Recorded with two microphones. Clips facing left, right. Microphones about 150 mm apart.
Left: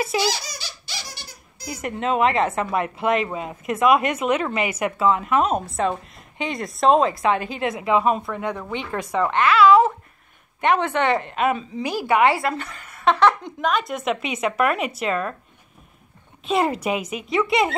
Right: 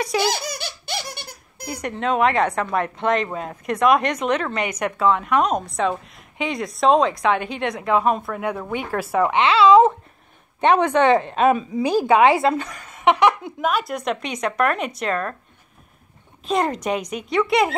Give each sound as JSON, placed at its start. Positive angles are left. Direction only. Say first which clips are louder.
{"t": 0.2, "sound": "giggle", "louder": "right 2 dB", "side_deg": -55}
{"t": 1.7, "sound": "a woman's voice", "louder": "right 1 dB", "side_deg": 5}
{"t": 9.4, "sound": "a woman's voice", "louder": "right 1 dB", "side_deg": -25}
{"t": 16.4, "sound": "a woman's voice", "louder": "even", "side_deg": 5}